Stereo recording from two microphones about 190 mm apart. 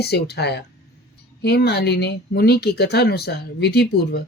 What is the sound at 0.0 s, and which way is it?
Speech, 60° left (ahead or behind).